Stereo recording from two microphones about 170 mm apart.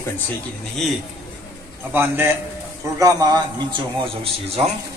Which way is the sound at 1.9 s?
15° right (ahead or behind).